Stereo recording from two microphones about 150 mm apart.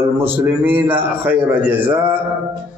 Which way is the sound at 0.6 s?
10° right (ahead or behind).